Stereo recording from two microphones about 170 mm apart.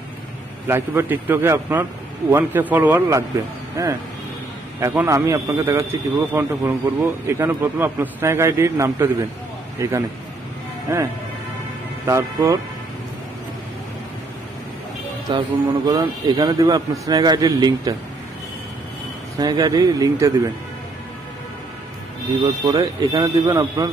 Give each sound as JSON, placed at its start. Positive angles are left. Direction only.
{"t": 0.7, "sound": "a man's voice", "side_deg": -15}
{"t": 12.1, "sound": "a man's voice", "side_deg": -20}
{"t": 15.2, "sound": "a man's voice", "side_deg": -25}
{"t": 19.4, "sound": "a man's voice", "side_deg": -20}
{"t": 22.4, "sound": "a man's voice", "side_deg": -25}